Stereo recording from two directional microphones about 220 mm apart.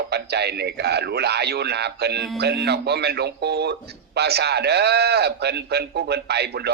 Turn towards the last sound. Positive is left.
turn(degrees=-50)  # may be behind; listen again after turning